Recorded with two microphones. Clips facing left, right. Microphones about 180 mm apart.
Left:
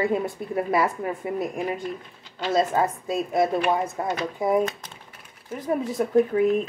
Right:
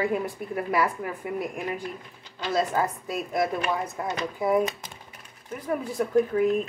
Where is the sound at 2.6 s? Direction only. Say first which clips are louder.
Left 3 dB; 25° left (ahead or behind).